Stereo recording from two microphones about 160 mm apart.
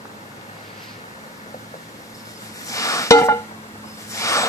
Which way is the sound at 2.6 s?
20° left (ahead or behind).